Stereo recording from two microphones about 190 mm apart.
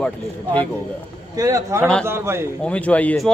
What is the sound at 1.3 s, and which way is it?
A man's voice, 15° right (ahead or behind).